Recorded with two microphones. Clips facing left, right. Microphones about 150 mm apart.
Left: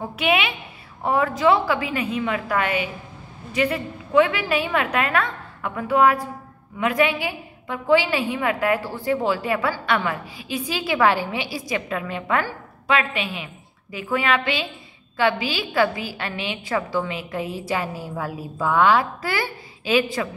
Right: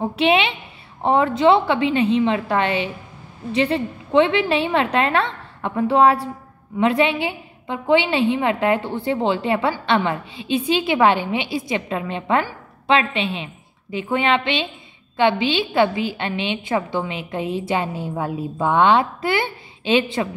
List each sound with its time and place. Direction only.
0.0 s a woman's voice: 30° right (ahead or behind)